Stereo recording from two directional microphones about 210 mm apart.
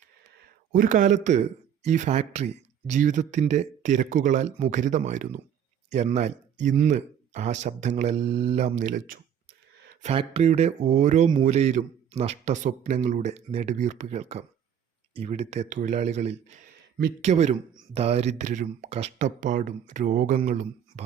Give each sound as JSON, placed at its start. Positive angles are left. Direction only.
{"t": 0.7, "sound": "speech", "side_deg": -40}
{"t": 10.0, "sound": "speech", "side_deg": -30}